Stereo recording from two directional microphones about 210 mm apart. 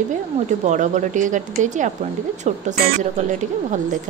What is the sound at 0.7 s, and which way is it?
Speech, 35° right (ahead or behind).